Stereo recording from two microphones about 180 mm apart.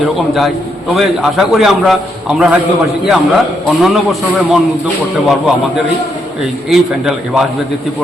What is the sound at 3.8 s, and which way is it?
Speech, centre (ahead or behind).